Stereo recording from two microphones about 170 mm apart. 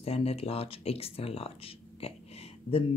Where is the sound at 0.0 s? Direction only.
35° left (ahead or behind).